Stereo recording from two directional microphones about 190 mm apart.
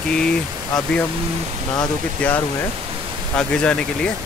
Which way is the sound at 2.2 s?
5° left (ahead or behind).